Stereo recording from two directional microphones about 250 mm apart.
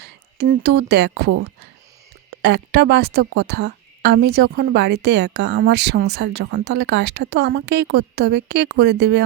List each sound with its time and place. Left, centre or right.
0.0 s a woman's voice: right
2.4 s speech: right